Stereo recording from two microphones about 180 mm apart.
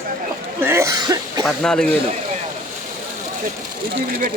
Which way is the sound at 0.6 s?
15° right (ahead or behind).